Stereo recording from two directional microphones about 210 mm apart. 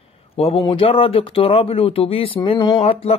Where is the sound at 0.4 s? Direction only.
25° left (ahead or behind).